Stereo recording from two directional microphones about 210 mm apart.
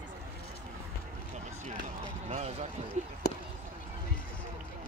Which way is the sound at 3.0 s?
30° right (ahead or behind).